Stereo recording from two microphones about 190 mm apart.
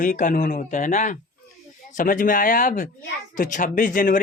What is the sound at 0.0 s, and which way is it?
Speech, 40° left (ahead or behind).